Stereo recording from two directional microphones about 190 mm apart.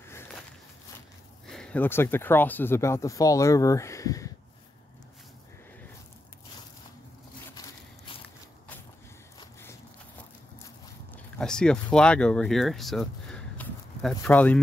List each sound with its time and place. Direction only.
1.5 s speech: 5° left (ahead or behind)
7.5 s a sound: 25° left (ahead or behind)
11.3 s speech: 5° left (ahead or behind)